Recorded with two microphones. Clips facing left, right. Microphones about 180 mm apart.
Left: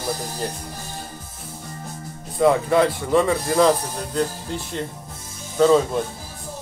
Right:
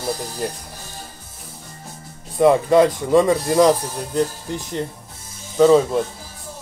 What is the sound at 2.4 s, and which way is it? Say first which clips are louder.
Speech: right 3 dB; 15° right (ahead or behind).